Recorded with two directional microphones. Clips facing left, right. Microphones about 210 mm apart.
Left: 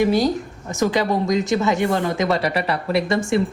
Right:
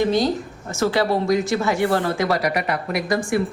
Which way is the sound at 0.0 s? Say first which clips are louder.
Left 1 dB; 10° left (ahead or behind).